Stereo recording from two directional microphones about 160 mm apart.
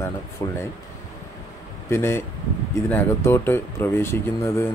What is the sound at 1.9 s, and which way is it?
Speech, 15° left (ahead or behind).